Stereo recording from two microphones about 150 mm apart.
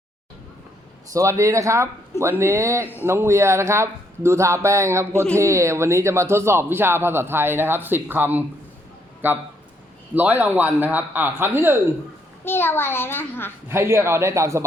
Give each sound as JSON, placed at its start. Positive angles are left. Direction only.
{"t": 1.1, "sound": "speech", "side_deg": -20}
{"t": 2.8, "sound": "a child's voice", "side_deg": 15}
{"t": 3.1, "sound": "speech", "side_deg": -15}
{"t": 10.2, "sound": "speech", "side_deg": -10}
{"t": 12.5, "sound": "a child's voice", "side_deg": 15}
{"t": 13.7, "sound": "speech", "side_deg": -15}